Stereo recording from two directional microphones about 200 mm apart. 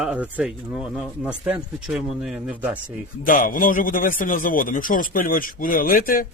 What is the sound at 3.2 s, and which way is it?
Speech, 45° left (ahead or behind).